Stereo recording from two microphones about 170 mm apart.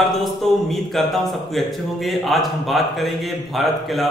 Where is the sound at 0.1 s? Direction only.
Centre (ahead or behind).